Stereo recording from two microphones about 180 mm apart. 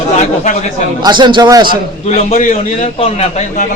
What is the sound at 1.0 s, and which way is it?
Speech, 25° right (ahead or behind).